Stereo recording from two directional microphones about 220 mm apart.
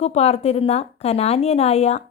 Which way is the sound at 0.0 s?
30° left (ahead or behind).